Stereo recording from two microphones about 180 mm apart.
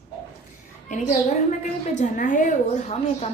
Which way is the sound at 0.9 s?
40° left (ahead or behind).